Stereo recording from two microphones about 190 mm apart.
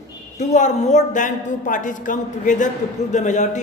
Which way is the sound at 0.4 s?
40° left (ahead or behind).